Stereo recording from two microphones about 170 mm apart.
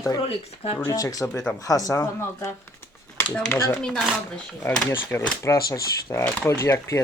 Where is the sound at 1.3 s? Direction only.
5° left (ahead or behind).